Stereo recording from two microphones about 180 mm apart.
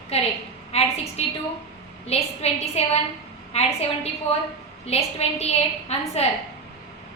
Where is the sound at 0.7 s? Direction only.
35° left (ahead or behind).